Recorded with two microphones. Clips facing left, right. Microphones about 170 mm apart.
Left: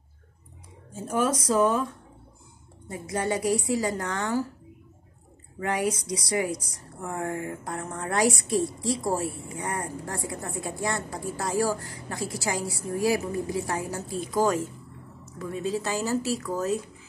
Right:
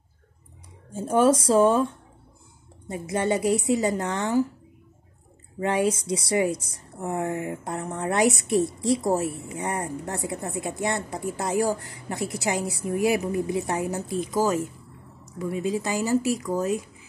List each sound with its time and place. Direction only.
0.9 s a woman's voice: 30° right (ahead or behind)
2.9 s a woman's voice: 25° right (ahead or behind)
5.6 s a woman's voice: 25° right (ahead or behind)
14.3 s speech: 5° right (ahead or behind)